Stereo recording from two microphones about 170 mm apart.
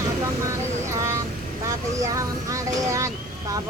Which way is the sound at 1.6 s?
20° right (ahead or behind).